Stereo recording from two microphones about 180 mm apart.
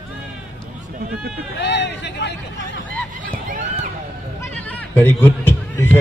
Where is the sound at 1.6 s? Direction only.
75° left (ahead or behind).